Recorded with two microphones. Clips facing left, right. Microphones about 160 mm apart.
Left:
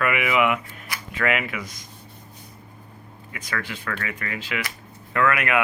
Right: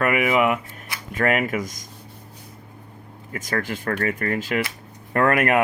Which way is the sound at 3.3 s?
40° right (ahead or behind).